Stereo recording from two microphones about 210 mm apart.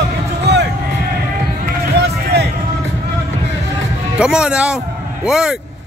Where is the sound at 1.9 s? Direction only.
50° right (ahead or behind).